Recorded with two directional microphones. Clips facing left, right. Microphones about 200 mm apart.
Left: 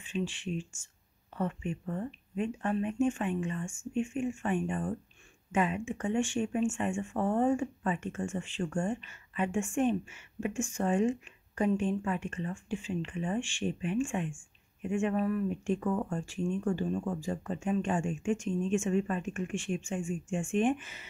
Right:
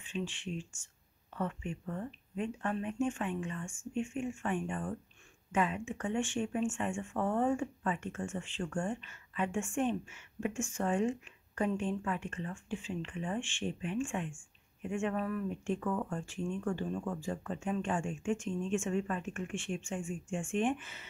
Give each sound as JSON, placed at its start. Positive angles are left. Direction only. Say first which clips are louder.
{"t": 0.0, "sound": "speech", "louder": "left 4 dB", "side_deg": 15}